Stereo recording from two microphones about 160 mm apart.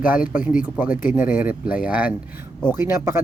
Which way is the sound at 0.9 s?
55° left (ahead or behind).